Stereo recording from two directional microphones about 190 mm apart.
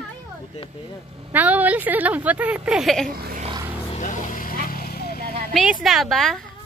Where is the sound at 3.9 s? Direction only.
40° left (ahead or behind).